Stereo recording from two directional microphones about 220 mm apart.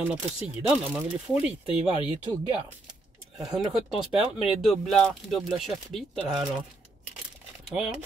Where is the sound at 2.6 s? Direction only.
Centre (ahead or behind).